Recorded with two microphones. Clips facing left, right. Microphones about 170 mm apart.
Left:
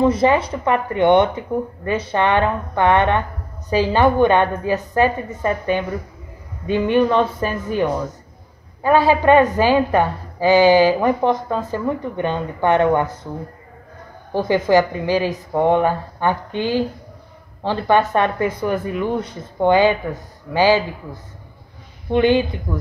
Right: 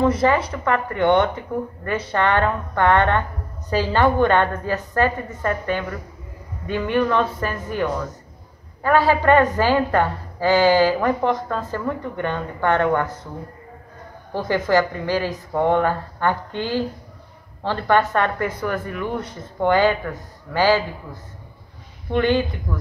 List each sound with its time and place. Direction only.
0.0 s a woman's voice: 20° left (ahead or behind)
14.3 s a woman's voice: 20° left (ahead or behind)
22.1 s a woman's voice: 20° left (ahead or behind)